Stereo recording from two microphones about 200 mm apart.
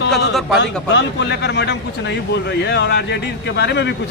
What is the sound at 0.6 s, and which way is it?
Speech, 60° left (ahead or behind).